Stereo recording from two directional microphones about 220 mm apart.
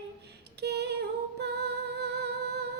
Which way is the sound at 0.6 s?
50° right (ahead or behind).